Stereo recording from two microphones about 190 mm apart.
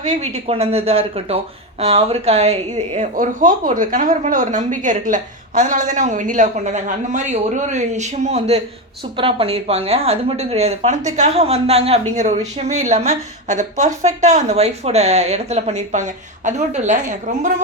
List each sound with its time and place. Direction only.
0.0 s speech: 35° right (ahead or behind)